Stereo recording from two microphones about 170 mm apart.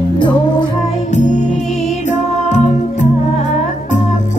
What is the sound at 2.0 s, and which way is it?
Music, 45° left (ahead or behind).